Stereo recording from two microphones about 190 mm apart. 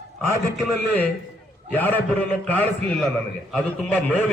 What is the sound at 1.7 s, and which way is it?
A man's voice, 10° left (ahead or behind).